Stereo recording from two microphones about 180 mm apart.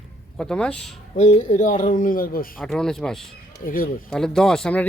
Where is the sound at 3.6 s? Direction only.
50° left (ahead or behind).